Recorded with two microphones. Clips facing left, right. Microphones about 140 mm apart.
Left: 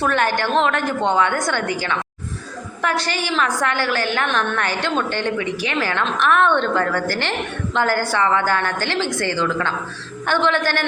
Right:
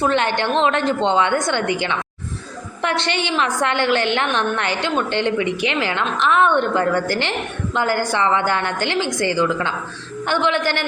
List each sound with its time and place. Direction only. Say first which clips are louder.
0.0 s a woman's voice: right 1 dB; 20° right (ahead or behind)